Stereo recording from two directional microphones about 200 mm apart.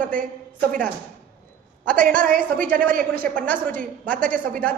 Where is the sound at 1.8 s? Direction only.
45° right (ahead or behind).